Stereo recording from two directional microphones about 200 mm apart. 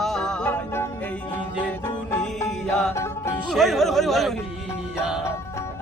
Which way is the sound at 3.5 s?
Centre (ahead or behind).